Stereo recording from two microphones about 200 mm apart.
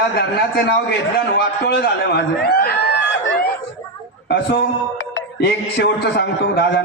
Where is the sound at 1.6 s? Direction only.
55° left (ahead or behind).